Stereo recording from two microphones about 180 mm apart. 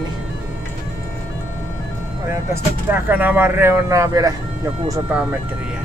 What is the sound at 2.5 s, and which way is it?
Speech, 10° right (ahead or behind).